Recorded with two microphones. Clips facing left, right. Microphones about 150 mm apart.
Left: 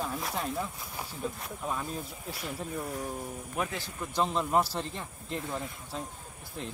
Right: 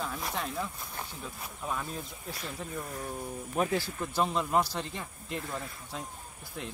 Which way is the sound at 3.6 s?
35° right (ahead or behind).